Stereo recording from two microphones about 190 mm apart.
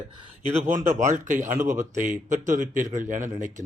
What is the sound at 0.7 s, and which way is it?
A man's voice, 40° right (ahead or behind).